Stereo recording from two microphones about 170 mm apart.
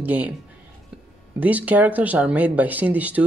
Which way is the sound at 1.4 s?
10° right (ahead or behind).